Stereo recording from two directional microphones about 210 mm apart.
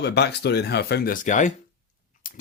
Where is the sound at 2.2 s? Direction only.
40° left (ahead or behind).